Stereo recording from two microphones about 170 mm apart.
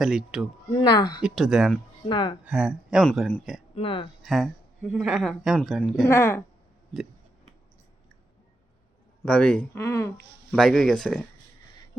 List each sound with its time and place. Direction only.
0.0 s speech: centre (ahead or behind)
0.7 s speech: 25° left (ahead or behind)
1.2 s speech: centre (ahead or behind)
2.0 s speech: 25° left (ahead or behind)
2.4 s speech: 5° right (ahead or behind)
3.0 s speech: 5° left (ahead or behind)
3.8 s speech: 30° left (ahead or behind)
4.2 s speech: centre (ahead or behind)
6.1 s speech: 15° left (ahead or behind)
9.2 s speech: 5° left (ahead or behind)
10.5 s speech: centre (ahead or behind)